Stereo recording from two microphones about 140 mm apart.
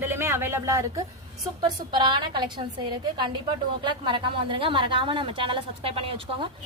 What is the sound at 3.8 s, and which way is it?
Speech, 35° right (ahead or behind).